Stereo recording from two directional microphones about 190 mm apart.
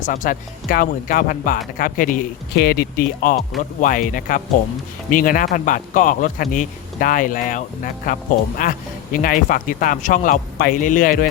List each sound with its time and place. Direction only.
0.0 s speech: 45° left (ahead or behind)